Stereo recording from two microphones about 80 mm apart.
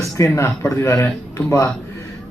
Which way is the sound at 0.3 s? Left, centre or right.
Left.